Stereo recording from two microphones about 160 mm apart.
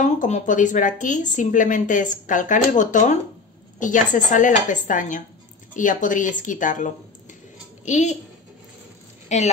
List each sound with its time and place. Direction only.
0.0 s a child's voice: 50° left (ahead or behind)
9.3 s speech: 45° left (ahead or behind)